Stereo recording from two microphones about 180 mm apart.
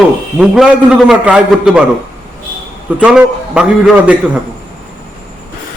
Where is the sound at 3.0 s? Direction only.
5° right (ahead or behind).